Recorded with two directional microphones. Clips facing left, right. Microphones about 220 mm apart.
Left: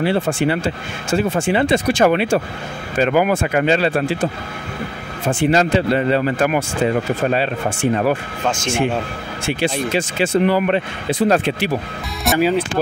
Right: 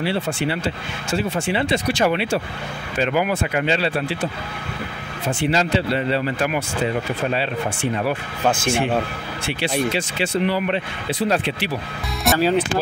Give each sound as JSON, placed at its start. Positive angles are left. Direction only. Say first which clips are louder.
{"t": 0.0, "sound": "speech", "louder": "left 5 dB", "side_deg": 50}
{"t": 9.5, "sound": "speech", "louder": "left 3 dB", "side_deg": 45}
{"t": 12.2, "sound": "speech", "louder": "left 1 dB", "side_deg": 0}